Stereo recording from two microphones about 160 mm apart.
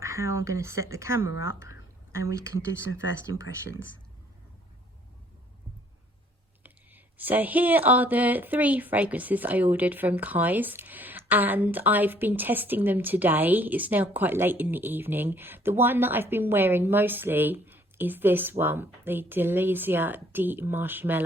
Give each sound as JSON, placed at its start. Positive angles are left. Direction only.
{"t": 0.0, "sound": "speech", "side_deg": -20}
{"t": 6.6, "sound": "speech", "side_deg": -10}